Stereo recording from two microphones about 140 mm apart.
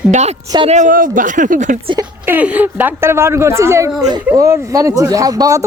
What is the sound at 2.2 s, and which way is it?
Speech, 10° right (ahead or behind).